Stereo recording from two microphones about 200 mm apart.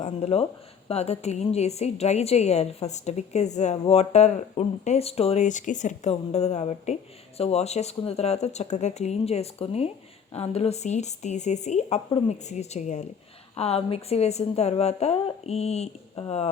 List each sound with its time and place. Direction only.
0.0 s a woman's voice: 30° left (ahead or behind)